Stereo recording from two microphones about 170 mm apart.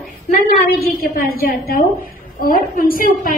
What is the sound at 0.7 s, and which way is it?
A woman's voice, 60° left (ahead or behind).